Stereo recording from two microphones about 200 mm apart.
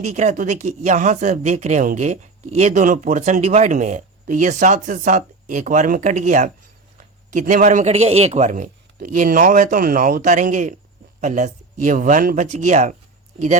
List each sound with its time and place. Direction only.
0.0 s speech: 35° right (ahead or behind)